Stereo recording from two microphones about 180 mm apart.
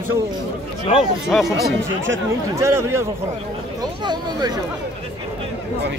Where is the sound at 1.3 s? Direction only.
Centre (ahead or behind).